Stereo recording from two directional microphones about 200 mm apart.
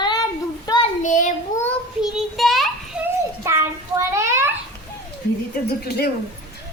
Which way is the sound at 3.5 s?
15° right (ahead or behind).